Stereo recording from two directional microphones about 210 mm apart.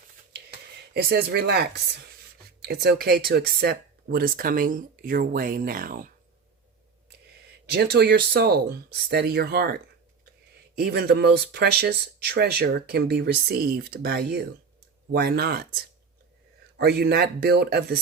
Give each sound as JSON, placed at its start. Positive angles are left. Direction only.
{"t": 0.9, "sound": "speech", "side_deg": -50}
{"t": 2.6, "sound": "speech", "side_deg": -50}
{"t": 7.7, "sound": "speech", "side_deg": -50}